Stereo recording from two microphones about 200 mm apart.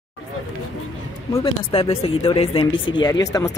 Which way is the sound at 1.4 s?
30° left (ahead or behind).